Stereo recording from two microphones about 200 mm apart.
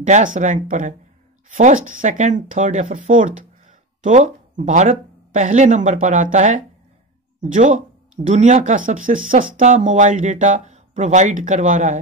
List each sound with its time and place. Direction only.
0.0 s speech: 40° right (ahead or behind)